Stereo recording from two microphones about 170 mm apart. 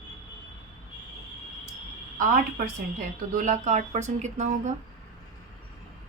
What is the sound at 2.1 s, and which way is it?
Speech, 60° right (ahead or behind).